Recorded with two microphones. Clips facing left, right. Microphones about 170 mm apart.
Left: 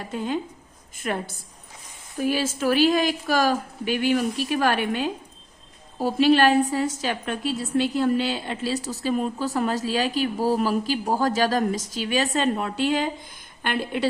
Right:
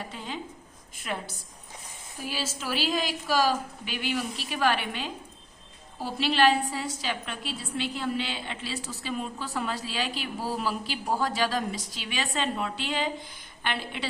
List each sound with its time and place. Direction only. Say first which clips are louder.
0.1 s a woman's voice: left 10 dB; 50° left (ahead or behind)